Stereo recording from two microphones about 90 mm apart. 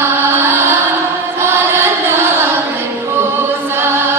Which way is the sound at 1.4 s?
25° right (ahead or behind).